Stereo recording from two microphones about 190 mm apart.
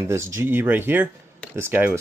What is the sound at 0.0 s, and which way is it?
Speech, 15° right (ahead or behind).